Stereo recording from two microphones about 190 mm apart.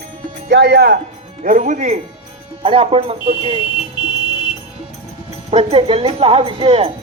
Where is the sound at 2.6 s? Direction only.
30° right (ahead or behind).